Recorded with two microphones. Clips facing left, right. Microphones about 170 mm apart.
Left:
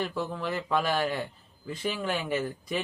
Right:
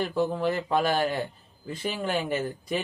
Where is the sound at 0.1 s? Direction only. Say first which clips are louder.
Right 6 dB; 35° right (ahead or behind).